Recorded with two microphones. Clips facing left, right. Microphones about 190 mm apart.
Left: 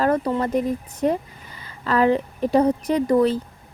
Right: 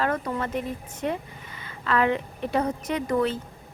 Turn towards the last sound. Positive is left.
turn(degrees=35)  # may be behind; listen again after turning